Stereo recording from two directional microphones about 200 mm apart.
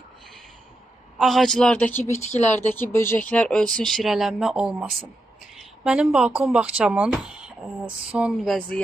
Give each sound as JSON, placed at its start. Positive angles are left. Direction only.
{"t": 1.1, "sound": "speech", "side_deg": 0}
{"t": 2.1, "sound": "speech", "side_deg": 35}
{"t": 2.7, "sound": "speech", "side_deg": 10}